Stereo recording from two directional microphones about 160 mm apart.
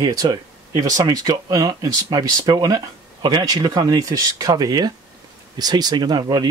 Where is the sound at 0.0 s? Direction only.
25° right (ahead or behind).